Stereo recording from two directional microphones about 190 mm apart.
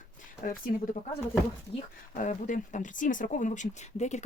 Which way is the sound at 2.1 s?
40° left (ahead or behind).